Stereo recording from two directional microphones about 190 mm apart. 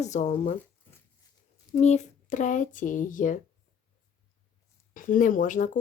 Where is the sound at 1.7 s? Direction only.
35° left (ahead or behind).